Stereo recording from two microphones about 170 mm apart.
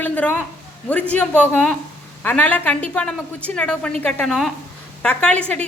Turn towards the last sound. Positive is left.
turn(degrees=5)  # may be behind; listen again after turning